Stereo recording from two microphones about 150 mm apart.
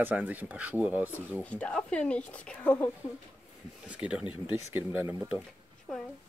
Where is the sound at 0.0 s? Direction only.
10° right (ahead or behind).